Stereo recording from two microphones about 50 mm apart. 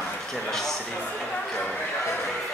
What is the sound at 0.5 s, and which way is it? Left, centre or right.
Speech, centre.